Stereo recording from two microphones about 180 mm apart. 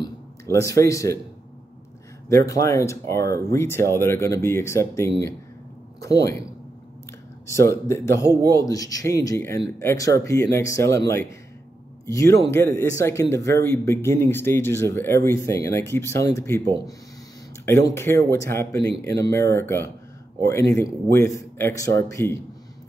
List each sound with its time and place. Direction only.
0.0 s speech: 15° left (ahead or behind)
2.2 s speech: 15° left (ahead or behind)
7.4 s speech: 15° left (ahead or behind)
17.6 s speech: 15° left (ahead or behind)